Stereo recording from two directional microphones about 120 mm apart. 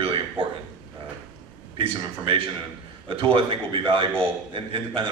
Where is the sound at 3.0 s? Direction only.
50° right (ahead or behind).